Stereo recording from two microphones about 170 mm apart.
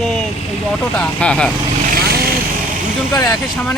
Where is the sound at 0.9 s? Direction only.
5° left (ahead or behind).